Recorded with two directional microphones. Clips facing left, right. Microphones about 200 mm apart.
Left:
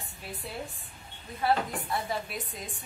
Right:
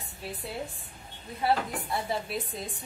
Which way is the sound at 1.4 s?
25° right (ahead or behind).